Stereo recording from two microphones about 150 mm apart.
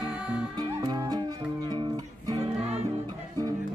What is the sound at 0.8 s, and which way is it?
Music, 25° right (ahead or behind).